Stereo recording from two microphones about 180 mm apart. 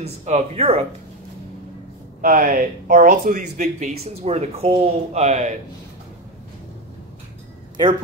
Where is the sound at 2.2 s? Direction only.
50° right (ahead or behind).